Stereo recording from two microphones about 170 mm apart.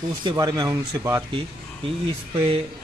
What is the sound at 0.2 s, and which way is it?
Speech, 25° right (ahead or behind).